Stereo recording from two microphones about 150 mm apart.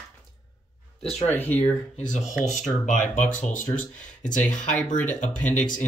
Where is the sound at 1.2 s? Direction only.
10° left (ahead or behind).